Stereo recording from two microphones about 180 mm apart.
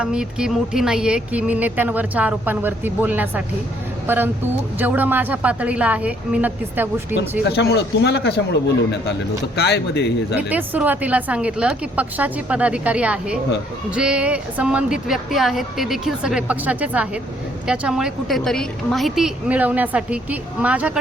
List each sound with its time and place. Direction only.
0.0 s speech: 5° right (ahead or behind)
7.4 s a man's voice: 70° left (ahead or behind)
10.3 s a woman's voice: 10° right (ahead or behind)